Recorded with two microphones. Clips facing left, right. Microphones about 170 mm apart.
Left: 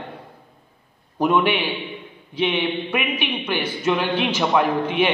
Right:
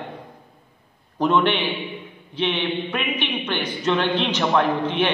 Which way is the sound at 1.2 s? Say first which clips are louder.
Even; 10° left (ahead or behind).